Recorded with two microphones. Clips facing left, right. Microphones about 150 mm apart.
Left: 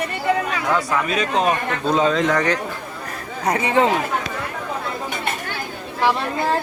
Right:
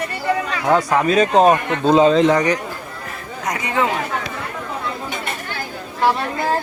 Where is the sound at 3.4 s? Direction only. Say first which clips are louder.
Left 3 dB; 30° left (ahead or behind).